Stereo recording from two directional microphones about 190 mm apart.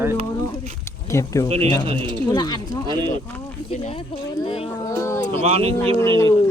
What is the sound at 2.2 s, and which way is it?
Speech, 20° left (ahead or behind).